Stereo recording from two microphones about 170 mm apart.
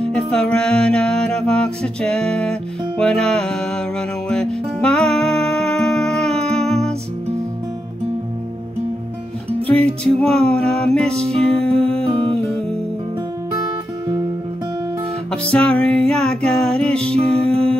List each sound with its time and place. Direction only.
0.1 s music: 5° left (ahead or behind)
9.8 s music: 5° left (ahead or behind)
11.1 s music: 35° right (ahead or behind)
11.4 s music: centre (ahead or behind)
12.0 s music: 35° right (ahead or behind)
15.5 s music: 5° left (ahead or behind)